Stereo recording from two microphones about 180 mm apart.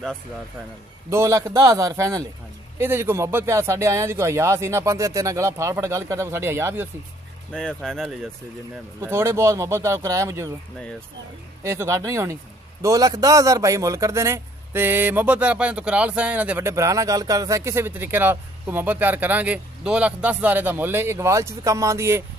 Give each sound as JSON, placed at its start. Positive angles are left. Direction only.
{"t": 1.1, "sound": "a man's voice", "side_deg": -15}
{"t": 7.5, "sound": "speech", "side_deg": 5}
{"t": 9.0, "sound": "a man's voice", "side_deg": -15}
{"t": 11.6, "sound": "a man's voice", "side_deg": -15}